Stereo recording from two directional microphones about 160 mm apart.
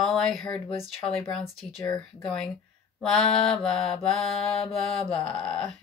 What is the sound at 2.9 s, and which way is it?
Speech, 5° left (ahead or behind).